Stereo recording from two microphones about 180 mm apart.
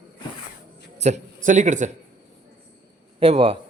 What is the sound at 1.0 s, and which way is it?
Speech, 40° right (ahead or behind).